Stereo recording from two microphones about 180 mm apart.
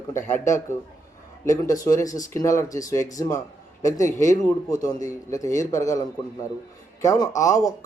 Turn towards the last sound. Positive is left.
turn(degrees=20)  # may be behind; listen again after turning